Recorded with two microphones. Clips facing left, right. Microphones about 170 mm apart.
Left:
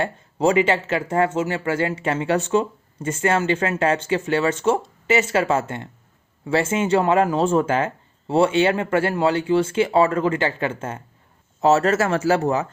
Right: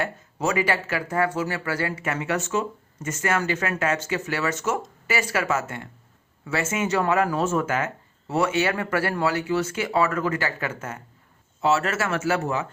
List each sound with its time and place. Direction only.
0.0 s speech: 30° left (ahead or behind)
11.6 s speech: 40° left (ahead or behind)